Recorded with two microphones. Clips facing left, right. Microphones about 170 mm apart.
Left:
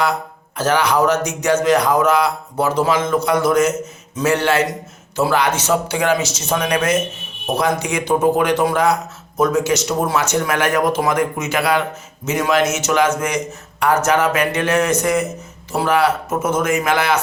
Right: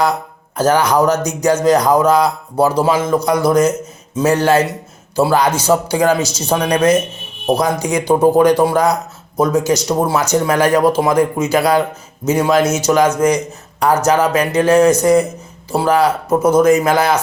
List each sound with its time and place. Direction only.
0.5 s a man's voice: 40° right (ahead or behind)